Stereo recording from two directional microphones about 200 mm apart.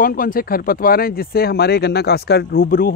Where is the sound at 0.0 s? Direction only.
45° left (ahead or behind).